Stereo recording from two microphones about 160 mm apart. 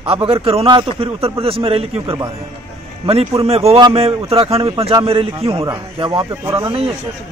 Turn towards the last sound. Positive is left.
turn(degrees=-30)  # may be behind; listen again after turning